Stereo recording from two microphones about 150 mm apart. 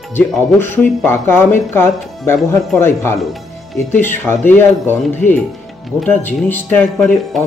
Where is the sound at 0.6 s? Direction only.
15° left (ahead or behind).